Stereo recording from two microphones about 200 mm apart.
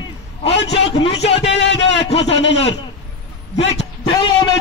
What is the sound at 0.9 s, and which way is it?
Speech, 30° left (ahead or behind).